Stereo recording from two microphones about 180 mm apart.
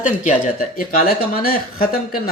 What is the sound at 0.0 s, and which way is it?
Speech, 45° left (ahead or behind).